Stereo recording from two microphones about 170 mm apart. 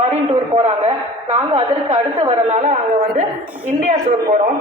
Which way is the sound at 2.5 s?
40° right (ahead or behind).